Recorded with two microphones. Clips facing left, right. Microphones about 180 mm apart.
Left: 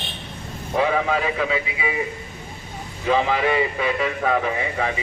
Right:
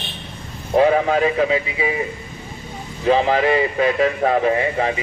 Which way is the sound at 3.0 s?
35° right (ahead or behind).